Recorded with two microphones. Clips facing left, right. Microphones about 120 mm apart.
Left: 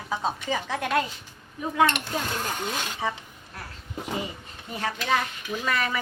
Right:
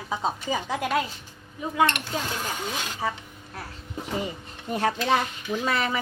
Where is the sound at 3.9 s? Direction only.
Centre (ahead or behind).